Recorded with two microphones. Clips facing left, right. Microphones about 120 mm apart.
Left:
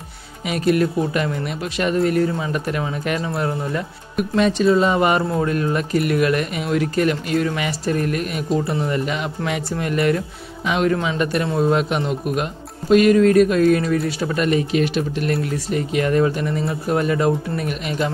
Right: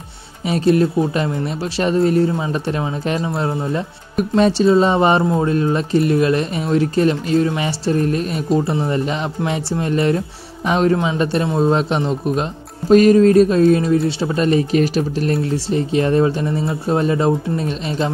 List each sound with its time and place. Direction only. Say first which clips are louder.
0.5 s speech: right 3 dB; 30° right (ahead or behind)